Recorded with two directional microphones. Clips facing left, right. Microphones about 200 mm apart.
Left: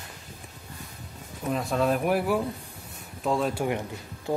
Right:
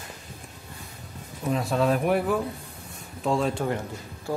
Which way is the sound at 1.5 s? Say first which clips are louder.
Right 1 dB; centre (ahead or behind).